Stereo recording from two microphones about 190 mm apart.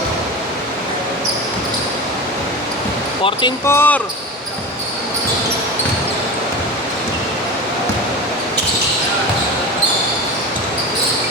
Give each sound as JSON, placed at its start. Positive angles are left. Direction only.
{"t": 3.7, "sound": "speech", "side_deg": 10}